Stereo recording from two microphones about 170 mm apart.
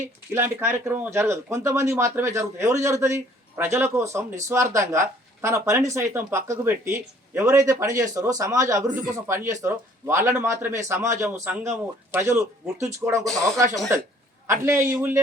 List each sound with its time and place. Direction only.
0.3 s speech: 10° right (ahead or behind)
8.9 s speech: 50° right (ahead or behind)
9.2 s speech: 15° right (ahead or behind)